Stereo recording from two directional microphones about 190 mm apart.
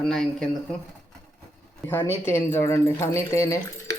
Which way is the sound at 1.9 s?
10° left (ahead or behind).